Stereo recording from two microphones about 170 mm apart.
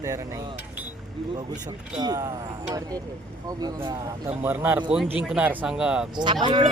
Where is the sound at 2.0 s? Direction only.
20° right (ahead or behind).